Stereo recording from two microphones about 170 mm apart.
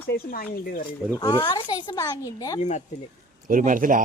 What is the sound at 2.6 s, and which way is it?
Speech, 45° left (ahead or behind).